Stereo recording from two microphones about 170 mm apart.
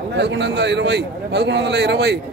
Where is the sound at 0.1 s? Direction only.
90° right.